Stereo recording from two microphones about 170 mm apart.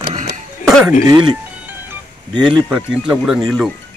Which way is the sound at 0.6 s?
5° right (ahead or behind).